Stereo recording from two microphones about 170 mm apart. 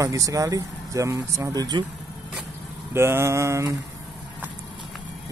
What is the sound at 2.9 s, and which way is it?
Speech, 15° right (ahead or behind).